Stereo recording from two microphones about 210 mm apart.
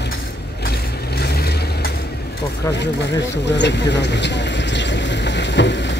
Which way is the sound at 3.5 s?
55° left (ahead or behind).